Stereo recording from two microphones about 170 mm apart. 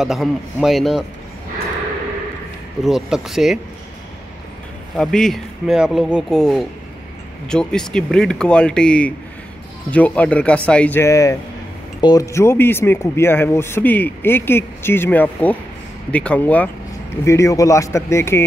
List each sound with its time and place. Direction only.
0.0 s speech: centre (ahead or behind)
2.8 s speech: centre (ahead or behind)
4.9 s speech: 5° left (ahead or behind)